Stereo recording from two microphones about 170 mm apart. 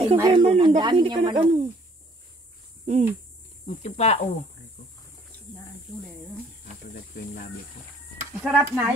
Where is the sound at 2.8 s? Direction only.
45° right (ahead or behind).